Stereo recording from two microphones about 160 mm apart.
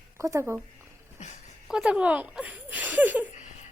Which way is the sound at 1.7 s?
5° right (ahead or behind).